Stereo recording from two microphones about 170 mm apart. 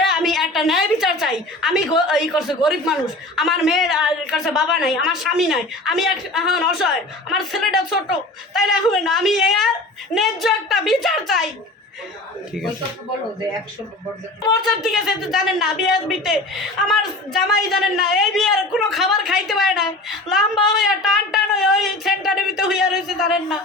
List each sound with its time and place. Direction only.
0.0 s a woman's voice: centre (ahead or behind)
14.6 s a man's voice: centre (ahead or behind)